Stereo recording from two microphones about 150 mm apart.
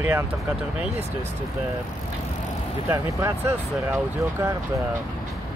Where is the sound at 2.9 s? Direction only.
15° right (ahead or behind).